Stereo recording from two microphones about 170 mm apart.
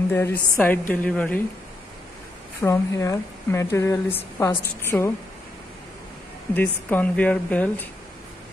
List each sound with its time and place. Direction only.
0.1 s speech: 10° left (ahead or behind)
2.6 s speech: 15° left (ahead or behind)
6.5 s speech: 10° left (ahead or behind)